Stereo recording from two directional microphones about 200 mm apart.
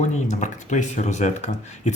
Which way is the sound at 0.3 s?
35° left (ahead or behind).